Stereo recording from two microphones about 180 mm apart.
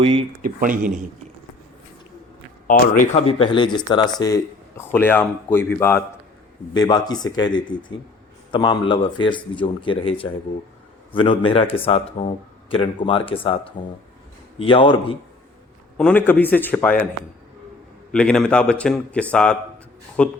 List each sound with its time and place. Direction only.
0.0 s speech: 30° right (ahead or behind)
0.4 s speech: 50° right (ahead or behind)
2.6 s speech: 50° left (ahead or behind); by 4.4 s 20° left (ahead or behind)
4.9 s speech: 10° left (ahead or behind); by 13.6 s 30° left (ahead or behind)
14.6 s speech: 30° left (ahead or behind)
16.0 s speech: 10° left (ahead or behind)
18.1 s a man's voice: 5° left (ahead or behind)